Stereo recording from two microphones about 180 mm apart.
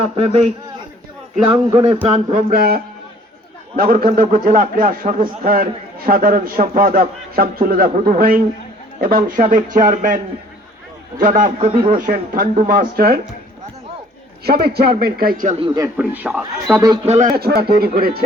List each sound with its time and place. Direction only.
0.0 s a man's voice: 30° right (ahead or behind)
1.7 s a man's voice: 25° right (ahead or behind)
2.0 s a man's voice: 35° right (ahead or behind)
2.5 s a man's voice: 60° right (ahead or behind)
11.2 s a man's voice: 50° right (ahead or behind)
14.4 s a man's voice: 60° right (ahead or behind)
15.5 s a man's voice: 25° right (ahead or behind)
16.0 s speech: 10° right (ahead or behind)
17.3 s a man's voice: 60° right (ahead or behind)